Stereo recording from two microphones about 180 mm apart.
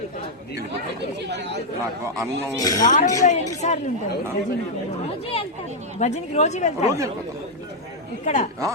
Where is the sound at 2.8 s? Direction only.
45° left (ahead or behind).